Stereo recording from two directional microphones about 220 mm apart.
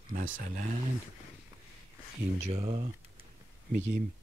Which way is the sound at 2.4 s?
30° right (ahead or behind).